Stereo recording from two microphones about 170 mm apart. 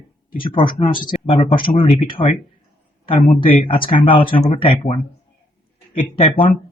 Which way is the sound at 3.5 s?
30° left (ahead or behind).